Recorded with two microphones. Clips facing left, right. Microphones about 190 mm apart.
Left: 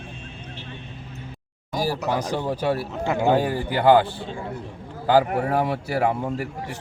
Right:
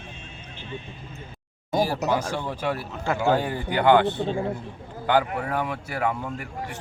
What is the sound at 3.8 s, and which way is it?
A man's voice, 35° left (ahead or behind).